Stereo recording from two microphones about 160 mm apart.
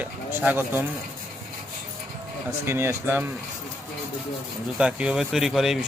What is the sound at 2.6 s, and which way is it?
Speech, 15° right (ahead or behind).